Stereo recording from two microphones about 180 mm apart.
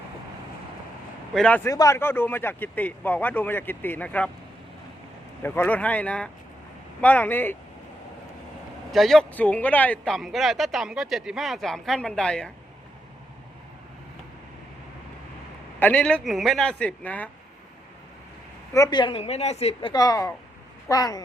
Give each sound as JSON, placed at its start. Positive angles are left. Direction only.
{"t": 1.3, "sound": "speech", "side_deg": 5}
{"t": 5.4, "sound": "speech", "side_deg": 10}
{"t": 8.9, "sound": "speech", "side_deg": 0}
{"t": 15.8, "sound": "speech", "side_deg": 10}
{"t": 18.7, "sound": "a woman's voice", "side_deg": 20}
{"t": 19.9, "sound": "speech", "side_deg": 20}